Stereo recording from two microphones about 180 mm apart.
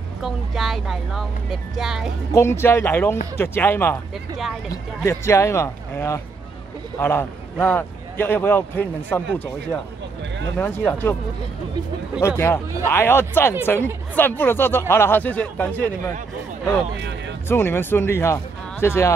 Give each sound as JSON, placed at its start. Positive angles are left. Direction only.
{"t": 0.2, "sound": "speech", "side_deg": 0}
{"t": 2.3, "sound": "a man's voice", "side_deg": 15}
{"t": 10.9, "sound": "a man's voice", "side_deg": 10}
{"t": 12.2, "sound": "a man's voice", "side_deg": 15}
{"t": 17.5, "sound": "a man's voice", "side_deg": 15}